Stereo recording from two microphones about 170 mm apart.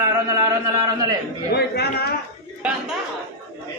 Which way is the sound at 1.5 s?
70° left (ahead or behind).